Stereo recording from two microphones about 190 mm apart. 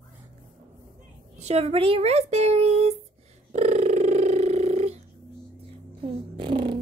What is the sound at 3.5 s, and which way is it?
Purr, 35° right (ahead or behind).